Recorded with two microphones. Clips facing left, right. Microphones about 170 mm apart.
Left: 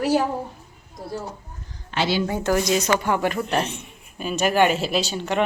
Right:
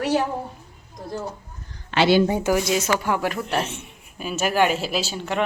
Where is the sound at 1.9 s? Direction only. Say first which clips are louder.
Right 5 dB; 80° right.